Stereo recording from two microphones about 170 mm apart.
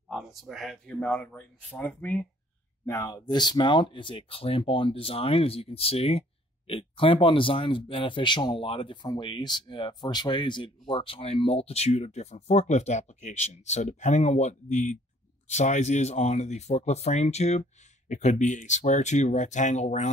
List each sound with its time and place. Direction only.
0.1 s speech: centre (ahead or behind); by 20.1 s 45° left (ahead or behind)